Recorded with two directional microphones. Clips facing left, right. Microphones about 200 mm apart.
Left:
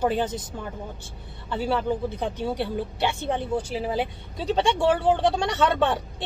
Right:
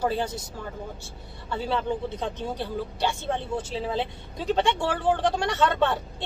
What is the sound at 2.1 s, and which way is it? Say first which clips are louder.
A woman's voice: left 3 dB; 15° left (ahead or behind).